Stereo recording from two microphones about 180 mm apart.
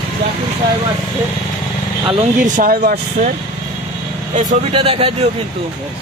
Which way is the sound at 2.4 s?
50° right (ahead or behind).